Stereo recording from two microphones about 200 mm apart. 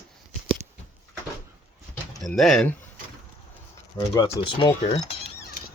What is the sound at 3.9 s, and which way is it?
Speech, 20° left (ahead or behind).